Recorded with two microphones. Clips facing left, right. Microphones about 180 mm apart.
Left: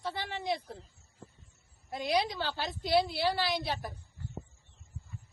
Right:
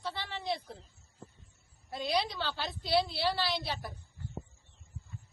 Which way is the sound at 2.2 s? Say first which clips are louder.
Left 2 dB; 45° left (ahead or behind).